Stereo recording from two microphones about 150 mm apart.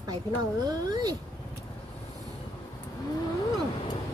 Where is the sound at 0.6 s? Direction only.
25° right (ahead or behind).